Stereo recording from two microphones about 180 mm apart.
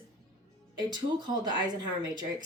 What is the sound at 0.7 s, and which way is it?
A woman's voice, 25° right (ahead or behind).